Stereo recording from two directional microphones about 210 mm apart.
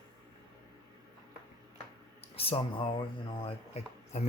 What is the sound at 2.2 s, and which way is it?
Speech, 25° left (ahead or behind).